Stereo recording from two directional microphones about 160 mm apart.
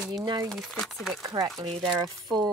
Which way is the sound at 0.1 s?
25° right (ahead or behind).